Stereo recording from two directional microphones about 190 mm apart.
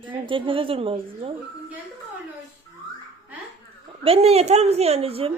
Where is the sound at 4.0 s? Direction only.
30° right (ahead or behind).